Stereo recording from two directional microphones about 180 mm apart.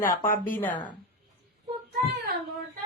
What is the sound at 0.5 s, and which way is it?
Speech, 10° left (ahead or behind).